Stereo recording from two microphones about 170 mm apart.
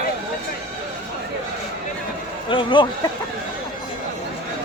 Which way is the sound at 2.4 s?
30° left (ahead or behind).